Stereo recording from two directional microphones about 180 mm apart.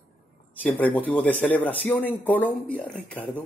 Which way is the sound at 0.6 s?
10° left (ahead or behind).